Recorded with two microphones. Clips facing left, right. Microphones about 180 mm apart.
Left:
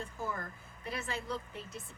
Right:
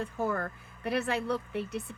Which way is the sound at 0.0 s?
65° right (ahead or behind).